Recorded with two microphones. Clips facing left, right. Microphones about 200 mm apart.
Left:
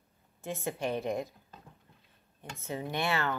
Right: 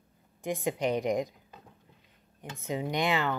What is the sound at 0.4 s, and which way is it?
Speech, 15° right (ahead or behind).